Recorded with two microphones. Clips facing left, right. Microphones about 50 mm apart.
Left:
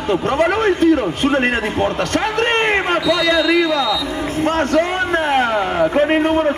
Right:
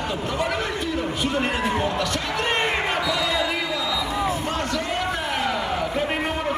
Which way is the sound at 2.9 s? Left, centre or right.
Left.